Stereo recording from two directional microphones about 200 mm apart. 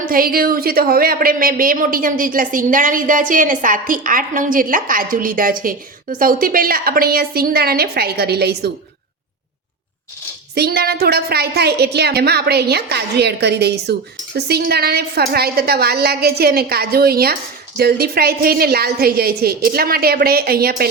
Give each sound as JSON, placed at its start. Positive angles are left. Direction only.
{"t": 0.0, "sound": "a woman's voice", "side_deg": -45}
{"t": 10.5, "sound": "a woman's voice", "side_deg": -50}